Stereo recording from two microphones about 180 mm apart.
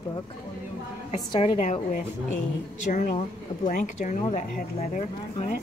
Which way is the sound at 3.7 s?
45° left (ahead or behind).